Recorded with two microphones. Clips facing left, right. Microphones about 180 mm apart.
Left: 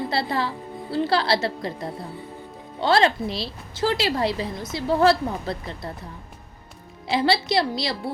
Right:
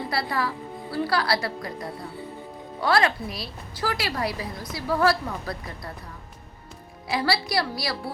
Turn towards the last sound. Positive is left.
turn(degrees=25)  # may be behind; listen again after turning